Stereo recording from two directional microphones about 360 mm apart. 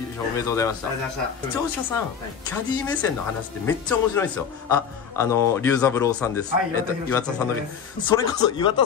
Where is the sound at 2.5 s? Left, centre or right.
Centre.